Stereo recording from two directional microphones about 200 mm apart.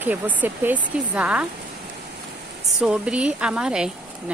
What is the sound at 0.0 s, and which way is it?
Speech, 10° right (ahead or behind).